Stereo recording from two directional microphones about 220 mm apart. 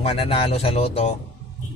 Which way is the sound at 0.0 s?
25° left (ahead or behind).